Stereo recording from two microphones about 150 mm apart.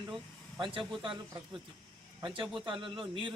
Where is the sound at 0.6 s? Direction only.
35° right (ahead or behind).